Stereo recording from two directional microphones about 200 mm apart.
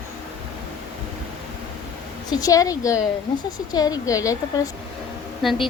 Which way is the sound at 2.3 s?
20° left (ahead or behind).